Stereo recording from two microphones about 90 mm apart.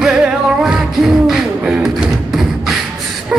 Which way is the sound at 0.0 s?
15° right (ahead or behind).